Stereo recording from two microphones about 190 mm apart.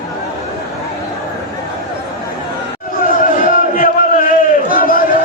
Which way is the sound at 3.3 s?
45° left (ahead or behind).